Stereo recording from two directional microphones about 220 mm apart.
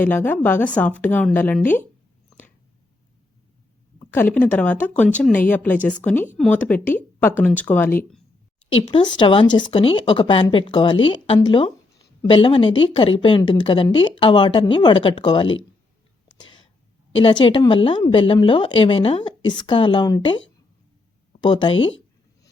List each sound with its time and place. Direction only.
0.0 s speech: 10° left (ahead or behind)
4.1 s speech: 10° left (ahead or behind)
8.9 s speech: 20° left (ahead or behind)
16.4 s whispering: 20° left (ahead or behind)
17.2 s speech: 25° left (ahead or behind)
21.4 s speech: 20° left (ahead or behind)